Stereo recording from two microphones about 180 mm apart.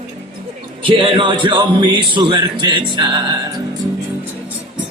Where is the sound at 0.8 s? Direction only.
30° right (ahead or behind).